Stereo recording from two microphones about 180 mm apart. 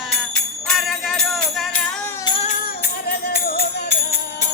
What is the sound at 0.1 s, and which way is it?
Jingle bell, 5° left (ahead or behind).